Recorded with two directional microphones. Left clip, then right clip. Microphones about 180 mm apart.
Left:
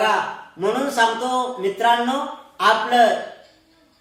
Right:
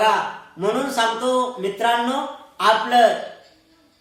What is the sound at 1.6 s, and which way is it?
A man's voice, 15° right (ahead or behind).